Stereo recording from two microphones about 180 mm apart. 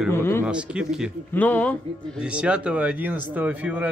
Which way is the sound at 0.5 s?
5° right (ahead or behind).